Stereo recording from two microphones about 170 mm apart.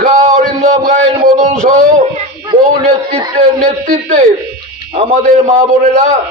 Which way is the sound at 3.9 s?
50° right (ahead or behind).